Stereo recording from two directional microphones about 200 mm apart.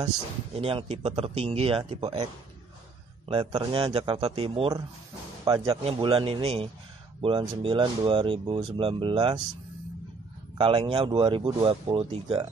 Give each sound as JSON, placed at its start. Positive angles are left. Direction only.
{"t": 0.6, "sound": "speech", "side_deg": -30}
{"t": 3.3, "sound": "speech", "side_deg": -25}
{"t": 10.6, "sound": "speech", "side_deg": -25}